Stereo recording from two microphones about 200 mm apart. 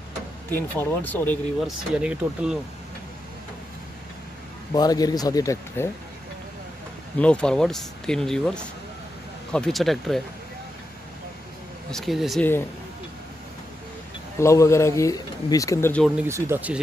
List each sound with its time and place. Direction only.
0.5 s speech: 10° left (ahead or behind)
2.0 s speech: 5° right (ahead or behind)
4.7 s speech: 20° left (ahead or behind)
7.2 s speech: 5° left (ahead or behind)
11.9 s speech: centre (ahead or behind)
14.4 s speech: 15° left (ahead or behind)
16.2 s speech: 15° right (ahead or behind)